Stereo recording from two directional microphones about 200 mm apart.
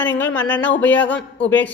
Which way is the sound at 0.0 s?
10° left (ahead or behind).